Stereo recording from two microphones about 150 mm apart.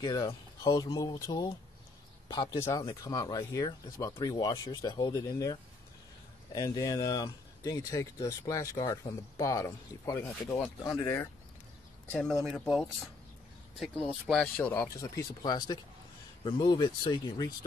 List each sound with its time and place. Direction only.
0.0 s speech: 25° left (ahead or behind)
12.1 s speech: 10° left (ahead or behind)
12.4 s speech: 5° right (ahead or behind)
15.0 s speech: 25° left (ahead or behind)